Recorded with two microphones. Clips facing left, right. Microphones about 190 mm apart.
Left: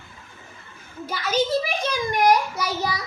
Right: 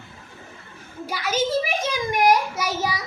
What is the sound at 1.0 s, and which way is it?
A woman's voice, 10° right (ahead or behind).